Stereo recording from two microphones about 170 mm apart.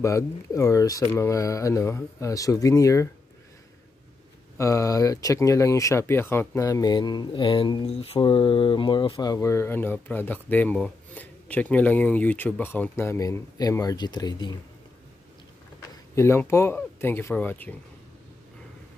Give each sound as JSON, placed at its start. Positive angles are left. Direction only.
{"t": 0.0, "sound": "speech", "side_deg": 20}
{"t": 4.6, "sound": "speech", "side_deg": 20}
{"t": 16.2, "sound": "speech", "side_deg": 15}